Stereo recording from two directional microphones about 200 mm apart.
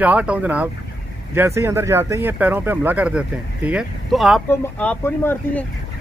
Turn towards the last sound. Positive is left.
turn(degrees=10)  # may be behind; listen again after turning